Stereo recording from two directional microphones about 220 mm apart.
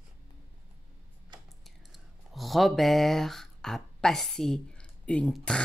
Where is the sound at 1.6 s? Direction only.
Centre (ahead or behind).